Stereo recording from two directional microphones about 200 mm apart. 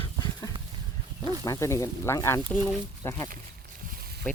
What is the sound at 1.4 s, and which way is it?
Speech, 15° left (ahead or behind).